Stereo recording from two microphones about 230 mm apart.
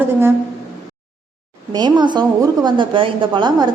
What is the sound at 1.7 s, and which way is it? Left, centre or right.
A woman's voice, centre.